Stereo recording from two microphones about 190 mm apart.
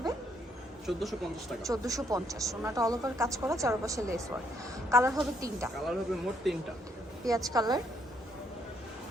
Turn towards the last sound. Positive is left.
turn(degrees=-20)  # may be behind; listen again after turning